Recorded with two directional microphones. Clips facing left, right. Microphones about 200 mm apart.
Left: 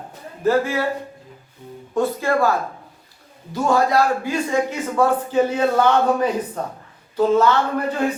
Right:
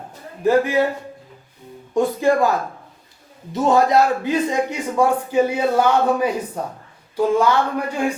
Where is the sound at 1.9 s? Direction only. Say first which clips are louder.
Right 3 dB; 15° right (ahead or behind).